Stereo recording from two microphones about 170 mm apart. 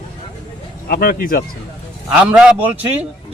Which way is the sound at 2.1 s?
5° right (ahead or behind).